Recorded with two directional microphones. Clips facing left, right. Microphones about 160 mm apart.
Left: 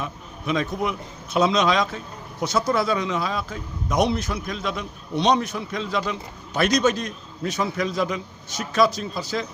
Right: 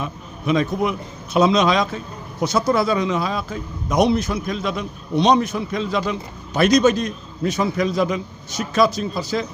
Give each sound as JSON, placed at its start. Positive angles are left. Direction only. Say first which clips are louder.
{"t": 0.0, "sound": "a man's voice", "louder": "right 4 dB", "side_deg": -15}